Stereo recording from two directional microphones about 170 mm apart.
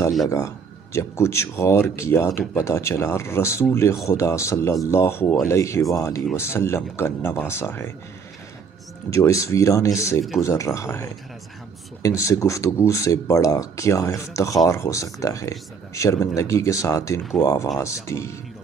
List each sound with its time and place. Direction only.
0.3 s speech: 15° left (ahead or behind)
9.1 s speech: 15° left (ahead or behind)